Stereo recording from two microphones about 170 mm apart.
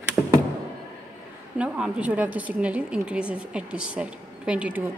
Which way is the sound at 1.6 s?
10° right (ahead or behind).